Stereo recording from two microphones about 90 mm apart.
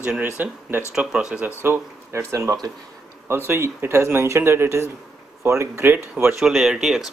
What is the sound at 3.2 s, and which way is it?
A man's voice, 25° right (ahead or behind).